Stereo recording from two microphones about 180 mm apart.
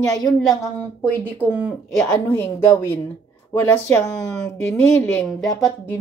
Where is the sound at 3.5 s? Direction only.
20° left (ahead or behind).